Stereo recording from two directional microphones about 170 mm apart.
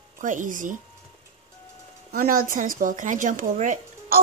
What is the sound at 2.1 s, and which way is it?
Speech, 55° right (ahead or behind).